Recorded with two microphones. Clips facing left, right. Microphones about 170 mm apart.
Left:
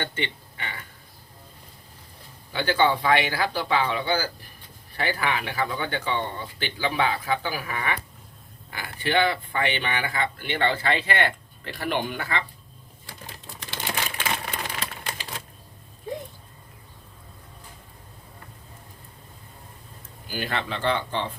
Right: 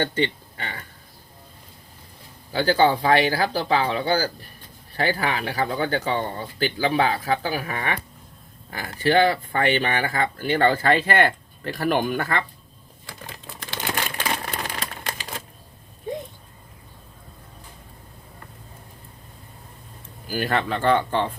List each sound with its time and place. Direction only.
0.0 s speech: 35° right (ahead or behind)
2.5 s speech: 35° right (ahead or behind); by 12.5 s 50° right (ahead or behind)
13.6 s typewriter: 45° right (ahead or behind)
20.2 s speech: 45° right (ahead or behind)